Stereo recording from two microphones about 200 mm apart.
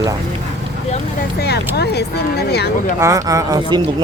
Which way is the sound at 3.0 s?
15° right (ahead or behind).